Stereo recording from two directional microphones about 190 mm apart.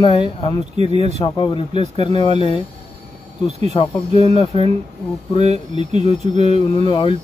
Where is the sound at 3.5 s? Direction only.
35° right (ahead or behind).